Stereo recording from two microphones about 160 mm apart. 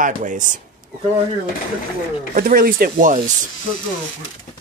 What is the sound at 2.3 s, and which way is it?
Speech, 65° right (ahead or behind).